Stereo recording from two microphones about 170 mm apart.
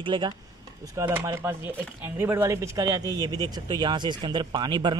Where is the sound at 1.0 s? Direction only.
15° right (ahead or behind).